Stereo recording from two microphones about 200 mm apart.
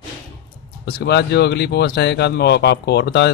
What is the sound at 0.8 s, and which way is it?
Speech, 55° left (ahead or behind).